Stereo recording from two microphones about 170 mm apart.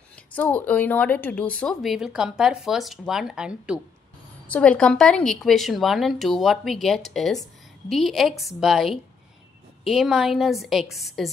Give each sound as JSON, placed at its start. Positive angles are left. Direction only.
{"t": 0.3, "sound": "speech", "side_deg": 10}
{"t": 4.5, "sound": "speech", "side_deg": 5}